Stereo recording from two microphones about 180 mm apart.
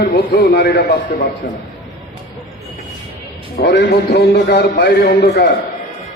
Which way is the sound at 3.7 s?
65° left (ahead or behind).